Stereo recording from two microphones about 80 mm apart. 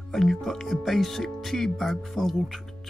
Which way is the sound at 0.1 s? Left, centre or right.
Centre.